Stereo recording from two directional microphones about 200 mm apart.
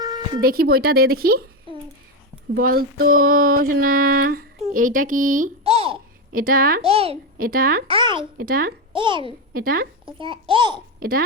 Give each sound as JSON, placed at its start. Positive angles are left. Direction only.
{"t": 0.0, "sound": "music", "side_deg": -20}
{"t": 0.4, "sound": "mantra", "side_deg": -50}
{"t": 1.7, "sound": "a sound", "side_deg": -25}
{"t": 2.6, "sound": "mantra", "side_deg": -45}
{"t": 5.6, "sound": "babbling", "side_deg": -30}
{"t": 6.3, "sound": "mantra", "side_deg": -45}
{"t": 6.8, "sound": "a child's voice", "side_deg": -30}
{"t": 7.3, "sound": "mantra", "side_deg": -45}
{"t": 7.9, "sound": "a child's voice", "side_deg": -25}
{"t": 8.4, "sound": "mantra", "side_deg": -45}
{"t": 8.9, "sound": "a child's voice", "side_deg": -25}
{"t": 9.5, "sound": "mantra", "side_deg": -50}
{"t": 10.1, "sound": "a child's voice", "side_deg": -25}